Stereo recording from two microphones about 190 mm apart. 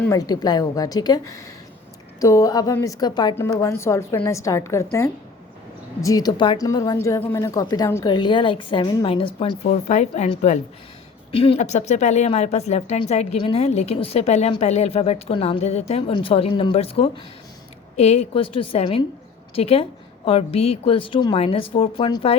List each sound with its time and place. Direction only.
0.1 s a woman's voice: 20° left (ahead or behind)